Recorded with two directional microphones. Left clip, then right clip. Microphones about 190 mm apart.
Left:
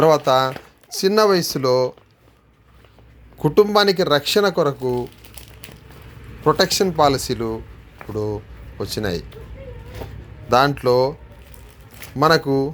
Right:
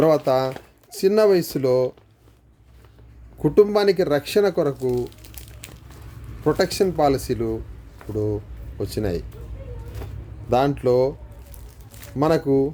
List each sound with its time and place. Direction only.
0.0 s speech: 15° right (ahead or behind)
3.4 s speech: 15° right (ahead or behind)
4.8 s crumpling: 5° left (ahead or behind)
6.4 s speech: 10° right (ahead or behind)
10.5 s speech: 15° right (ahead or behind)
12.1 s speech: 15° right (ahead or behind)